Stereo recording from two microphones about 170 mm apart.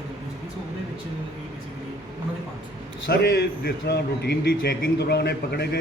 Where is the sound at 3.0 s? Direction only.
70° left (ahead or behind).